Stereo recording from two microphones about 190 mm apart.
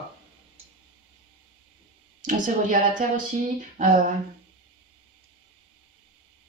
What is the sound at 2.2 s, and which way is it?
Speech, 45° right (ahead or behind).